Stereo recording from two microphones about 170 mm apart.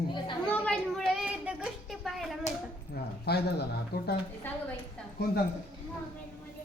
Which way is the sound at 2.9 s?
70° left (ahead or behind).